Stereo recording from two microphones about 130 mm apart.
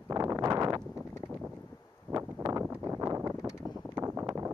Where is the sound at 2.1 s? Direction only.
30° right (ahead or behind).